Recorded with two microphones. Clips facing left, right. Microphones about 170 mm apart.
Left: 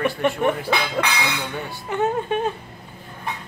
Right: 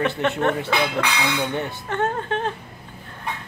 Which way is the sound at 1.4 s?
20° right (ahead or behind).